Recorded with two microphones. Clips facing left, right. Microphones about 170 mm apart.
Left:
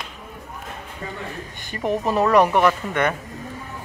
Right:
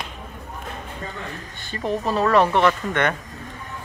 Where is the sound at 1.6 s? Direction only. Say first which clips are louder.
Left 2 dB; 15° left (ahead or behind).